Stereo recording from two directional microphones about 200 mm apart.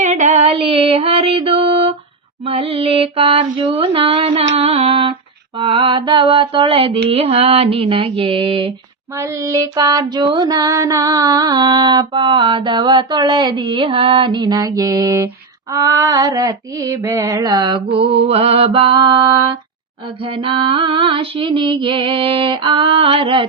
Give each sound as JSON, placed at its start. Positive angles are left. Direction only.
{"t": 0.0, "sound": "music", "side_deg": -35}
{"t": 2.4, "sound": "mantra", "side_deg": -30}
{"t": 4.5, "sound": "a sound", "side_deg": -30}
{"t": 5.5, "sound": "mantra", "side_deg": -25}
{"t": 7.1, "sound": "female singing", "side_deg": -30}
{"t": 9.1, "sound": "female singing", "side_deg": -15}